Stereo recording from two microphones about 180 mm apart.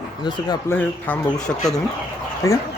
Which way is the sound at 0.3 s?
25° left (ahead or behind).